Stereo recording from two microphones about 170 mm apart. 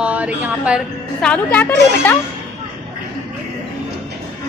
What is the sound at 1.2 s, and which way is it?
Speech, 10° left (ahead or behind).